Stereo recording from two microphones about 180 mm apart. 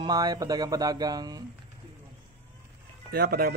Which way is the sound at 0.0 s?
20° right (ahead or behind).